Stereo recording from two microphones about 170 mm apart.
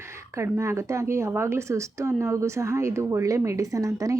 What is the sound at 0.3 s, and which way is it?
Speech, 15° right (ahead or behind).